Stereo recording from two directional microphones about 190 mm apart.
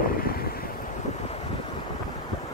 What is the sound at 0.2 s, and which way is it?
Waves, 50° left (ahead or behind).